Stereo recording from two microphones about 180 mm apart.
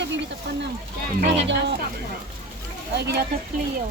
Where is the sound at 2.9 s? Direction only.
65° right (ahead or behind).